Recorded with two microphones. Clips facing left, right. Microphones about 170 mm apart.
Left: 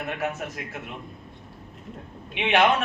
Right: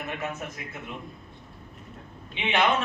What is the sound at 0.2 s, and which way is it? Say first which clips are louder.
Speech: left 4 dB; 90° left.